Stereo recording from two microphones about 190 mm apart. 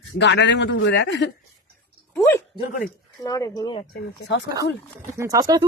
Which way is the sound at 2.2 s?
15° left (ahead or behind).